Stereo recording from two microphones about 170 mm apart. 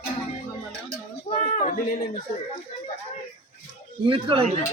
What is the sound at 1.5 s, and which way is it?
Speech, 45° left (ahead or behind).